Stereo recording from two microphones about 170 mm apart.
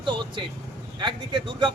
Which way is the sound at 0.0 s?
30° right (ahead or behind).